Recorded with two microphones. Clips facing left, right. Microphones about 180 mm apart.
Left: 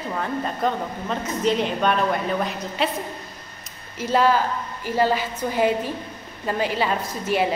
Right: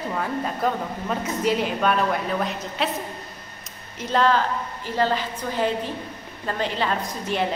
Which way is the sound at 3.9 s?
10° left (ahead or behind).